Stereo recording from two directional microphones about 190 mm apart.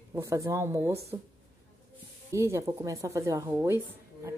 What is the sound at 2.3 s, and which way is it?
A woman's voice, 15° right (ahead or behind).